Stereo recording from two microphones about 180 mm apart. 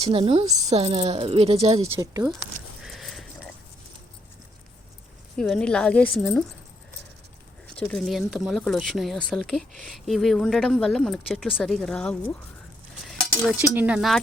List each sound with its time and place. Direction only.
0.0 s a woman's voice: 30° right (ahead or behind)
1.8 s speech: 20° right (ahead or behind)
2.8 s a sound: centre (ahead or behind)
5.4 s speech: 5° left (ahead or behind)
7.8 s speech: 5° left (ahead or behind)
13.4 s speech: centre (ahead or behind)